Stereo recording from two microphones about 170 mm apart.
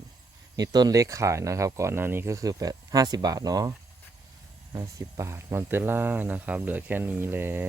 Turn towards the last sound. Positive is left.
turn(degrees=-10)  # may be behind; listen again after turning